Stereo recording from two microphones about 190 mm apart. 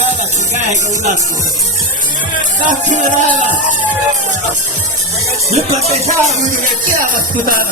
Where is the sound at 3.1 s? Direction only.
40° right (ahead or behind).